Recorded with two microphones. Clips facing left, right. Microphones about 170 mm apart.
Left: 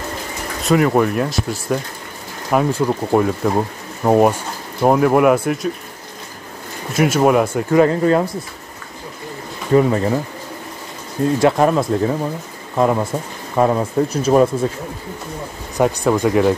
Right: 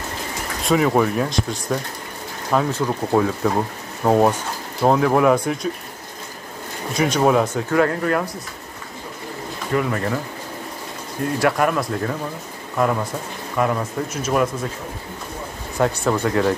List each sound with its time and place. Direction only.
0.7 s speech: centre (ahead or behind)
6.9 s speech: 5° left (ahead or behind); by 8.3 s 25° left (ahead or behind)
9.9 s speech: 20° left (ahead or behind)
11.3 s speech: 25° left (ahead or behind)
15.8 s speech: 15° left (ahead or behind)